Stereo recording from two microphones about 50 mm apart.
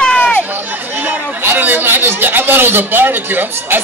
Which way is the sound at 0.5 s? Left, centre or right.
Right.